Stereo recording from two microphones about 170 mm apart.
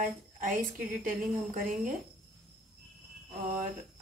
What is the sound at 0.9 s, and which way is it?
A woman's voice, 55° right (ahead or behind).